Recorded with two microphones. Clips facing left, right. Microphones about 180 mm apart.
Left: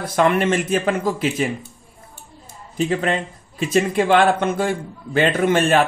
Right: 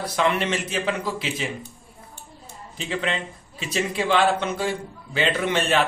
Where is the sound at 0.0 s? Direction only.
50° left (ahead or behind).